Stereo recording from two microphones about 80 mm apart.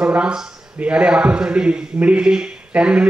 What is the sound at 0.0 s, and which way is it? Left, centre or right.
A man's voice, centre.